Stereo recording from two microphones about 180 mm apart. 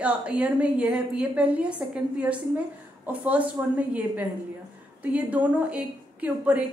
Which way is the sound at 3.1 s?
10° right (ahead or behind).